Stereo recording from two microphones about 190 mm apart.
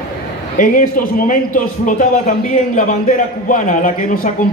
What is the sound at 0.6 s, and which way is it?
A man's voice, 45° left (ahead or behind).